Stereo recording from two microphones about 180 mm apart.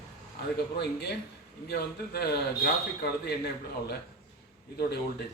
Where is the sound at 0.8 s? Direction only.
65° left (ahead or behind).